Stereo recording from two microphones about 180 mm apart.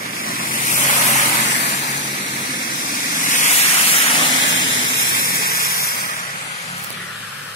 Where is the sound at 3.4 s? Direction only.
35° left (ahead or behind).